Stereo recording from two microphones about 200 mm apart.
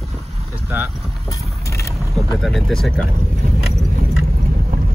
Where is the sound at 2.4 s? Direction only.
Centre (ahead or behind).